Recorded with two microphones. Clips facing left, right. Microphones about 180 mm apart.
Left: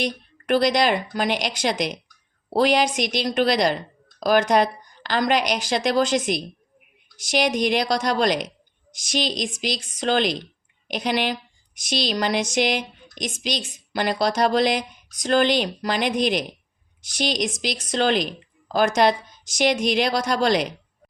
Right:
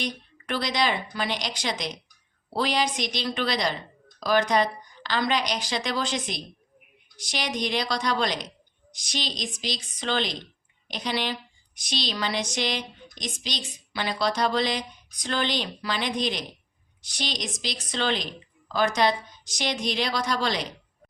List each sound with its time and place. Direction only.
0.0 s a woman's voice: 50° left (ahead or behind)